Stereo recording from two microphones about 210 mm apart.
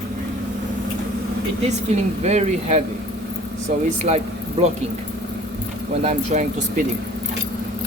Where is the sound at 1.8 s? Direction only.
30° right (ahead or behind).